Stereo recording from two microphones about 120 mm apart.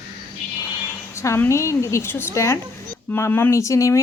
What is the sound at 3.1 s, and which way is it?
Speech, 20° left (ahead or behind).